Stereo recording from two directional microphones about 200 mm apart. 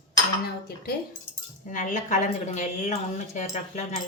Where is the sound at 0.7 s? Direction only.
50° left (ahead or behind).